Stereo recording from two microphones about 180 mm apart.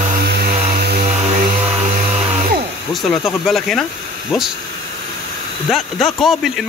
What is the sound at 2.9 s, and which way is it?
Speech, centre (ahead or behind).